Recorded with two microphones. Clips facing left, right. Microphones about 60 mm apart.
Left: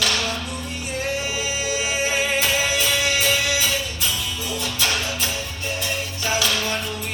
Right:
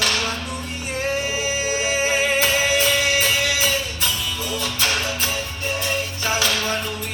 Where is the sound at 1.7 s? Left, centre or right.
Right.